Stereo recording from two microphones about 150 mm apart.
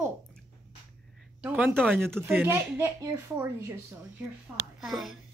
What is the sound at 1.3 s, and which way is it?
Speech, 10° right (ahead or behind).